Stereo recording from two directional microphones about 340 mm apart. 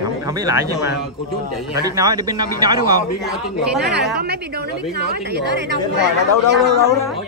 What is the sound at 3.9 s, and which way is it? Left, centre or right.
Speech, right.